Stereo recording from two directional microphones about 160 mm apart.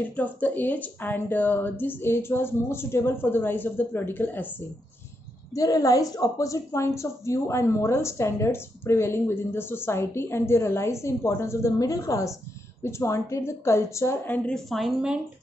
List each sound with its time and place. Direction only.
0.0 s a woman's voice: 10° left (ahead or behind)